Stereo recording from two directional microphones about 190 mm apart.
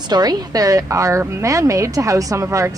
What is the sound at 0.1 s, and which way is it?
Speech, 20° right (ahead or behind).